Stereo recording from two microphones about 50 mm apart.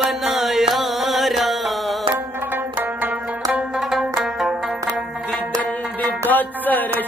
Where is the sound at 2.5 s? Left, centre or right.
Right.